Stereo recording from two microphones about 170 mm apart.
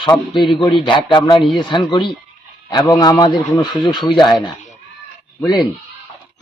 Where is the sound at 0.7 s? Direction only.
30° left (ahead or behind).